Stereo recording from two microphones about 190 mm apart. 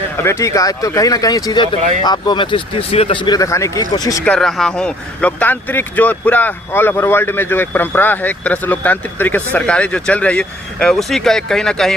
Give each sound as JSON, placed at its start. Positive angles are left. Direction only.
{"t": 0.2, "sound": "speech", "side_deg": 15}
{"t": 4.3, "sound": "speech", "side_deg": 0}